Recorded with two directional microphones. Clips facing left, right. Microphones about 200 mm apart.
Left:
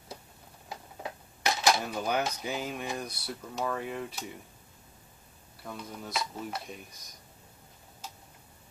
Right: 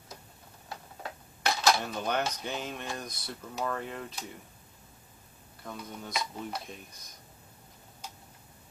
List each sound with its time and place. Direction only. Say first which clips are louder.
0.7 s a sound: left 2 dB; 15° left (ahead or behind)
1.8 s speech: left 1 dB; 5° left (ahead or behind)
5.6 s speech: even; 5° left (ahead or behind)